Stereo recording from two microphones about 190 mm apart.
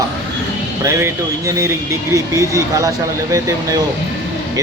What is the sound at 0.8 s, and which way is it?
Speech, 15° right (ahead or behind).